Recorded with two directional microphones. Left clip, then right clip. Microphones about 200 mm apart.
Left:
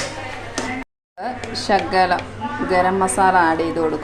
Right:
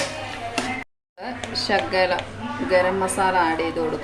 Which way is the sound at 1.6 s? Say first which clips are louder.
Left 4 dB; 15° left (ahead or behind).